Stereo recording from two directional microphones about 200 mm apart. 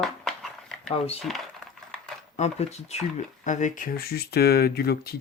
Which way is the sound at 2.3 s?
35° left (ahead or behind).